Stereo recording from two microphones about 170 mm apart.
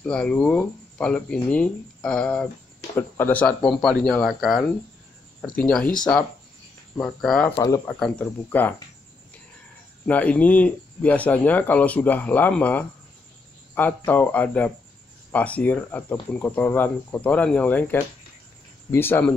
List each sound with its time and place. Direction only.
0.0 s speech: 5° left (ahead or behind)
7.0 s speech: centre (ahead or behind)
7.5 s speech: 20° left (ahead or behind)
7.8 s speech: 10° left (ahead or behind)
10.0 s speech: 10° left (ahead or behind)
18.9 s speech: 15° left (ahead or behind)